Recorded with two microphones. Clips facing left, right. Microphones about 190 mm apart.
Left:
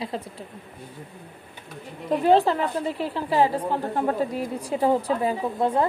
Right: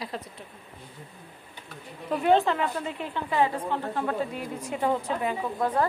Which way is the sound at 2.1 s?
35° left (ahead or behind).